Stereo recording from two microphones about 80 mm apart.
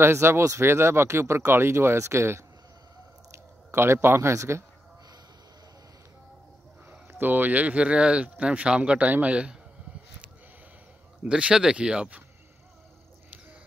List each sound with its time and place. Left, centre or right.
0.0 s speech: right
3.7 s speech: right
6.9 s speech: right
11.2 s speech: centre